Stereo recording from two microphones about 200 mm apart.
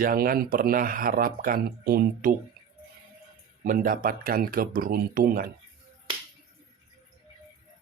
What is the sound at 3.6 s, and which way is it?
Speech, 45° right (ahead or behind).